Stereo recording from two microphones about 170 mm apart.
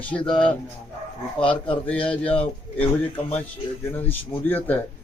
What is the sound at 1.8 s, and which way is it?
Speech, 10° left (ahead or behind).